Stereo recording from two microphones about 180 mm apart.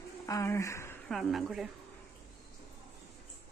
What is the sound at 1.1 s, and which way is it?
Speech, centre (ahead or behind).